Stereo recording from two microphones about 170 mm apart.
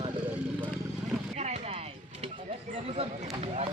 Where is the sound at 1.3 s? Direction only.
40° right (ahead or behind).